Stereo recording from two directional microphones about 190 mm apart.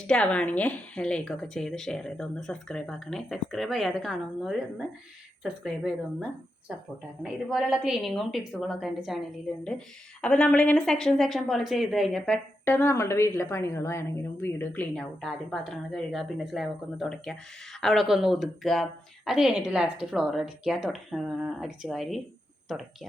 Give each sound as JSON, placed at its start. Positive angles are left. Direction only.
{"t": 0.1, "sound": "a woman's voice", "side_deg": 5}